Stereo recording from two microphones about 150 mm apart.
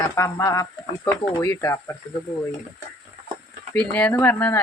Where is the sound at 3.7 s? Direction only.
10° left (ahead or behind).